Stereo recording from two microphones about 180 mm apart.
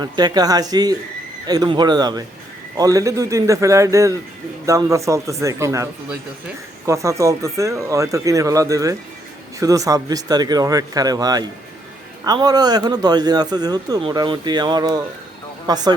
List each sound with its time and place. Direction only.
0.0 s a man's voice: 20° right (ahead or behind)